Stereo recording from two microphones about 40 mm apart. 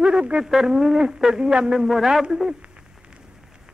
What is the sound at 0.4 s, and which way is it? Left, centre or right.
Speech, centre.